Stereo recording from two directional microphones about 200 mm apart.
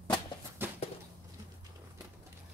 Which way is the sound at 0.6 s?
10° right (ahead or behind).